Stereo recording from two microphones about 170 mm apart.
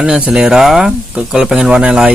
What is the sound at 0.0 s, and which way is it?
Speech, 5° right (ahead or behind).